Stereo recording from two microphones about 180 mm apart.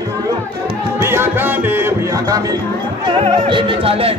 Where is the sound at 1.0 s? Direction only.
15° right (ahead or behind).